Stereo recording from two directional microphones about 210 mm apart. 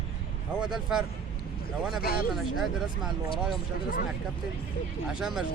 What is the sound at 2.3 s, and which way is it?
Speech, centre (ahead or behind).